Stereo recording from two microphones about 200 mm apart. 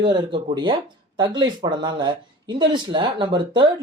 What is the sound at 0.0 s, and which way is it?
Speech, 25° right (ahead or behind).